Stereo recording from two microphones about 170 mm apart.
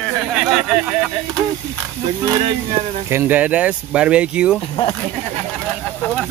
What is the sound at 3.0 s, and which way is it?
Speech, 10° right (ahead or behind).